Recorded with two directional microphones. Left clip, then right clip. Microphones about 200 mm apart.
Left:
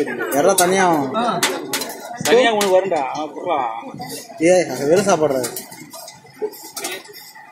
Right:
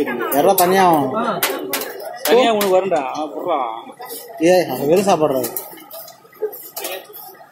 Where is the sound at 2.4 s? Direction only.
35° right (ahead or behind).